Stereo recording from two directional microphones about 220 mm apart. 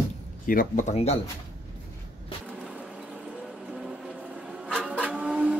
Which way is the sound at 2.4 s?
5° right (ahead or behind).